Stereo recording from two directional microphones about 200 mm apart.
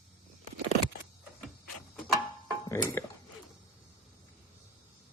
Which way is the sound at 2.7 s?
15° left (ahead or behind).